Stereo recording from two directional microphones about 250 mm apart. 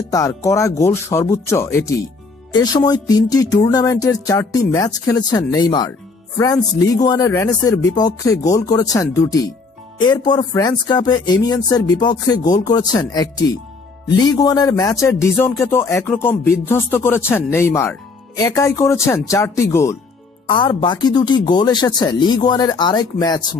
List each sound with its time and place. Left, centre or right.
0.1 s speech: centre